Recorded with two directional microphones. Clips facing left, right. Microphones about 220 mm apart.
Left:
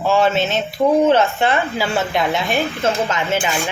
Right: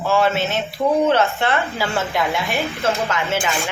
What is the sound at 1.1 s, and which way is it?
Speech, 15° left (ahead or behind).